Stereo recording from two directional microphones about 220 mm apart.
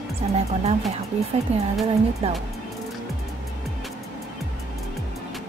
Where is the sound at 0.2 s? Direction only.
30° right (ahead or behind).